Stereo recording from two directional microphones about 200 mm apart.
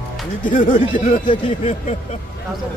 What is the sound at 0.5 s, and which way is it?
Speech, 40° left (ahead or behind).